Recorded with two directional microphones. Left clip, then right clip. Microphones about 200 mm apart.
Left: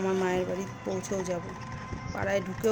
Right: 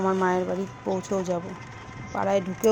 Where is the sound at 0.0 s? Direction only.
10° right (ahead or behind).